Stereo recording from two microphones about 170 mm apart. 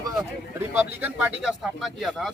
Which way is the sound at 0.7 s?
10° right (ahead or behind).